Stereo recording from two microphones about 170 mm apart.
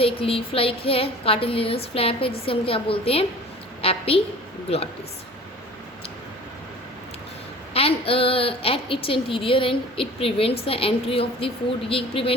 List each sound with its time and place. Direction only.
0.0 s a woman's voice: 35° left (ahead or behind)
7.7 s a woman's voice: 35° left (ahead or behind)